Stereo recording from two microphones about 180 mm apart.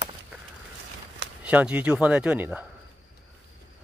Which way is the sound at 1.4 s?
10° right (ahead or behind).